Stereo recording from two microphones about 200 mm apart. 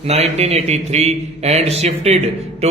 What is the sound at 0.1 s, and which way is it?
A man's voice, 35° right (ahead or behind).